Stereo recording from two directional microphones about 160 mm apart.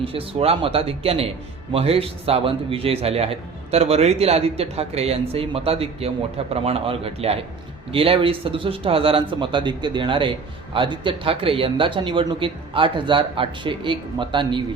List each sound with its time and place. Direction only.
0.0 s a man's voice: 35° right (ahead or behind)